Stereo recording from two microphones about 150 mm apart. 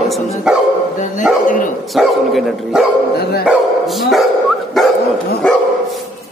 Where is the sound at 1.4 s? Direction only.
60° left (ahead or behind).